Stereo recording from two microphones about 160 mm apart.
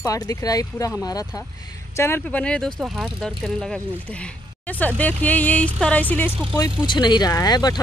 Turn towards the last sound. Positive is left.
turn(degrees=25)  # may be behind; listen again after turning